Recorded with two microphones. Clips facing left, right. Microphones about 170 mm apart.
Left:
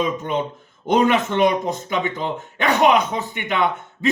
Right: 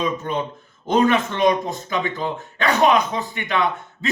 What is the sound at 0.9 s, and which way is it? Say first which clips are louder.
A man's voice: left 1 dB; 15° left (ahead or behind).